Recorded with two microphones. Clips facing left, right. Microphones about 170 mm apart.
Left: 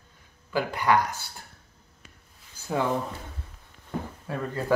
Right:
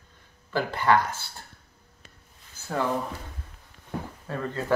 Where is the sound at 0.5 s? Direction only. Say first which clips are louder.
Right 1 dB; 15° left (ahead or behind).